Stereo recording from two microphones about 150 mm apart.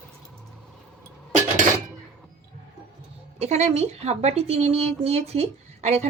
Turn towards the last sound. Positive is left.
turn(degrees=-45)  # may be behind; listen again after turning